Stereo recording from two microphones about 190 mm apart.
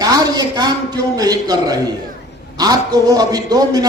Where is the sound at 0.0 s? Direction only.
20° right (ahead or behind).